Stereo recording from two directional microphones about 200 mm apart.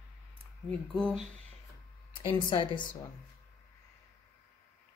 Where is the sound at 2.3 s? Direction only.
25° left (ahead or behind).